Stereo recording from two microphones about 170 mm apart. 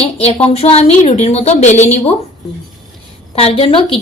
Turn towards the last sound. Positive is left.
turn(degrees=30)  # may be behind; listen again after turning